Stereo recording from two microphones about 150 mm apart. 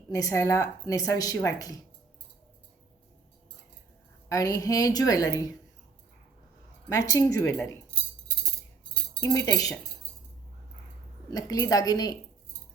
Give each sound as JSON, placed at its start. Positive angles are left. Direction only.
{"t": 0.1, "sound": "a woman's voice", "side_deg": 20}
{"t": 4.3, "sound": "a woman's voice", "side_deg": 25}
{"t": 6.8, "sound": "a woman's voice", "side_deg": 20}
{"t": 9.2, "sound": "a woman's voice", "side_deg": 25}
{"t": 11.3, "sound": "a woman's voice", "side_deg": 25}